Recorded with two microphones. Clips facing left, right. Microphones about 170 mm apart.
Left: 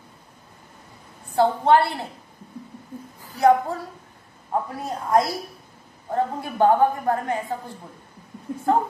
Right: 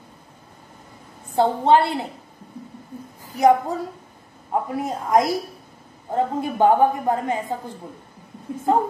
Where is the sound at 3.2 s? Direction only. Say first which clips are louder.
Right 1 dB; 15° right (ahead or behind).